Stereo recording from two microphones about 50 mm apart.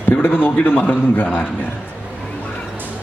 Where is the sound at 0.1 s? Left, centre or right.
Left.